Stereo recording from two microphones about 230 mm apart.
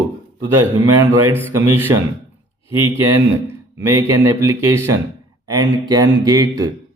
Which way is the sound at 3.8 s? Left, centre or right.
Centre.